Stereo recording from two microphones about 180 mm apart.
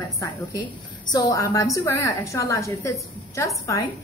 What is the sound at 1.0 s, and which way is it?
A woman's voice, 20° left (ahead or behind).